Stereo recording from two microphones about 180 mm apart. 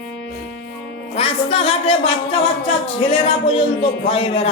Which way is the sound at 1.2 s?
30° left (ahead or behind).